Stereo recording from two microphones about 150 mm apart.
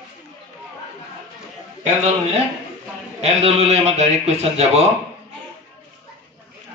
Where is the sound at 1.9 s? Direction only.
55° right (ahead or behind).